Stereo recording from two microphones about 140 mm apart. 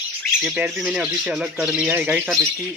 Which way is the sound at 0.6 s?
5° right (ahead or behind).